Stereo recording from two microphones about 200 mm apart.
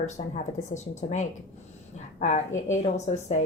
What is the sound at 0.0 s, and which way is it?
A woman's voice, 35° left (ahead or behind).